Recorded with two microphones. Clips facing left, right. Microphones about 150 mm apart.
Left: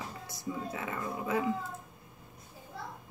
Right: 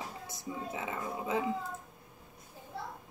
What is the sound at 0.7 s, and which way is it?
Speech, 15° right (ahead or behind).